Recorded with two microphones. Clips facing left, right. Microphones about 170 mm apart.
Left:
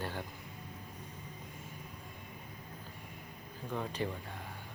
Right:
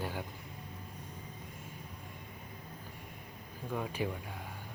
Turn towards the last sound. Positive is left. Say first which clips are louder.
# right 1 dB
turn(degrees=-10)  # may be behind; listen again after turning